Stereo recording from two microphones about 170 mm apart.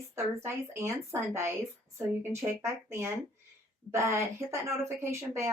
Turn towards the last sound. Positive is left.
turn(degrees=-15)  # may be behind; listen again after turning